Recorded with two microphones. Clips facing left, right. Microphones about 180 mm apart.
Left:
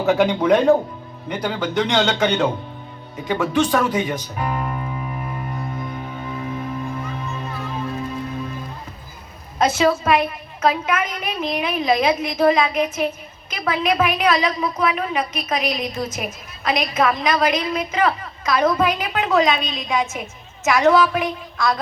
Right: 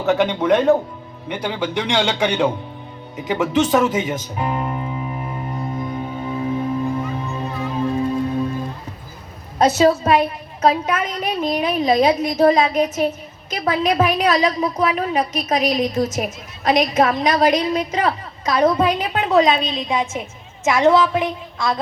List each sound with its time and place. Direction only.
0.0 s a man's voice: centre (ahead or behind)
3.2 s music: 20° right (ahead or behind)
9.6 s a woman's voice: 35° right (ahead or behind)